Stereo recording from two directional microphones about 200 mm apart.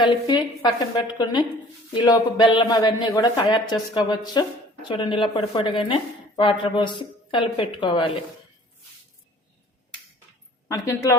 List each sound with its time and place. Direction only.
0.0 s speech: 20° left (ahead or behind)
10.7 s speech: 15° left (ahead or behind)